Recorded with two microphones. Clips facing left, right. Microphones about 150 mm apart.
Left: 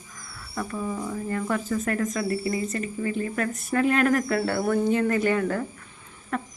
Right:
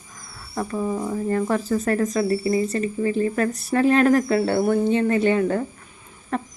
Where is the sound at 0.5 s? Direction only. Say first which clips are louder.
Right 5 dB; 35° right (ahead or behind).